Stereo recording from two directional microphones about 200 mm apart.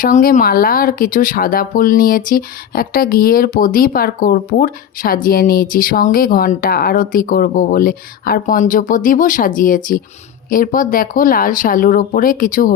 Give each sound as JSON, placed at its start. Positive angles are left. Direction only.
{"t": 0.0, "sound": "speech", "side_deg": 45}